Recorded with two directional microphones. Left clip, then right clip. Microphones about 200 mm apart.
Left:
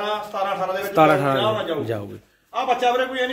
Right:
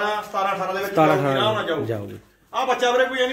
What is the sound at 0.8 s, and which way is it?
Speech, 15° left (ahead or behind).